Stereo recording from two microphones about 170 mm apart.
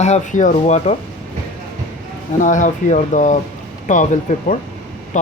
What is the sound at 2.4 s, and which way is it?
Speech, 45° left (ahead or behind).